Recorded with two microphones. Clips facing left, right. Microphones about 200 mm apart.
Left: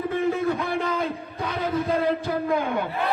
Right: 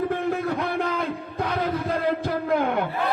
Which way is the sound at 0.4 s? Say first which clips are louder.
Left 1 dB; 60° right (ahead or behind).